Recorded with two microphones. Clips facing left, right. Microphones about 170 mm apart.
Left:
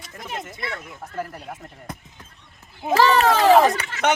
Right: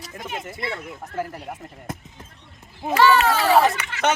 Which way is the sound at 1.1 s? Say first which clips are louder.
Right 2 dB; centre (ahead or behind).